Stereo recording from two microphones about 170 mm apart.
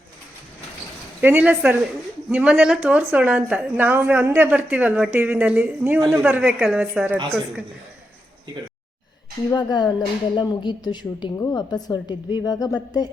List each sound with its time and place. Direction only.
1.2 s a woman's voice: 10° right (ahead or behind)
9.5 s a woman's voice: 25° left (ahead or behind)